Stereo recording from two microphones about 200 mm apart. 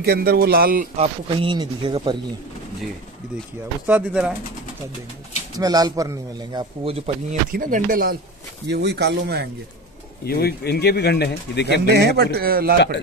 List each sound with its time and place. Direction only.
0.0 s speech: 50° right (ahead or behind)
0.9 s speech: 30° right (ahead or behind)
3.8 s speech: 5° right (ahead or behind)
5.6 s speech: 20° right (ahead or behind)
7.5 s speech: 45° right (ahead or behind)
8.6 s speech: 55° right (ahead or behind)
10.2 s speech: 50° left (ahead or behind)
11.9 s speech: 55° right (ahead or behind)